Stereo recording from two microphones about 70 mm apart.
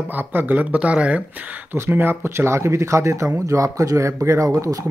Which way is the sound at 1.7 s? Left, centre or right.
Right.